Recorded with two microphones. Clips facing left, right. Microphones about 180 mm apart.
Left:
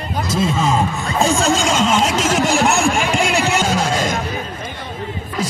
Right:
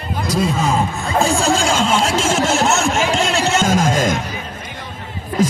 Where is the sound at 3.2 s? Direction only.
10° left (ahead or behind).